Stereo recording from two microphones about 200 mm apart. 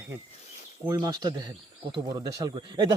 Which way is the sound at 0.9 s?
15° right (ahead or behind).